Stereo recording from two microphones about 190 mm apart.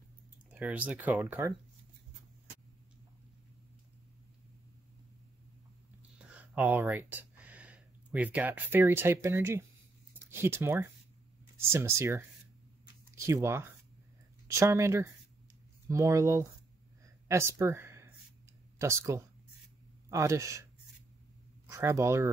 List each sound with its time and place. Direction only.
0.5 s speech: 10° right (ahead or behind)
6.1 s speech: 10° right (ahead or behind)
17.0 s a sound: 15° right (ahead or behind)
18.8 s speech: 15° right (ahead or behind)
21.6 s speech: 15° right (ahead or behind)